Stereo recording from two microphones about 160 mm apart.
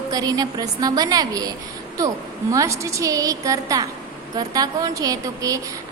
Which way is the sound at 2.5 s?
20° right (ahead or behind).